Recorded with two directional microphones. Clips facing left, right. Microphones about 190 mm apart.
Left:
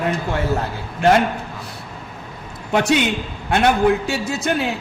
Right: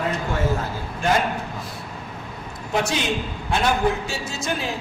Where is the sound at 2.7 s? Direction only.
65° left (ahead or behind).